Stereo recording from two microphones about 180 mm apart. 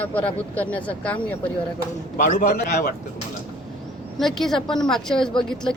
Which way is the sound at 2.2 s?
45° left (ahead or behind).